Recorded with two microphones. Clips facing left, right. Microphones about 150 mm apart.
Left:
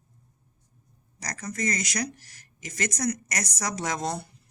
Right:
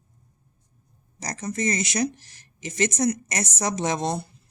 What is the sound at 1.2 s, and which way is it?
Speech, 25° right (ahead or behind).